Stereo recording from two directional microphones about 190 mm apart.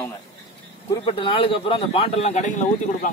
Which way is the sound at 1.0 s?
25° left (ahead or behind).